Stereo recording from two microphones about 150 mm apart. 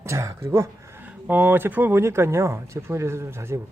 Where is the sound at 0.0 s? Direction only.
20° right (ahead or behind).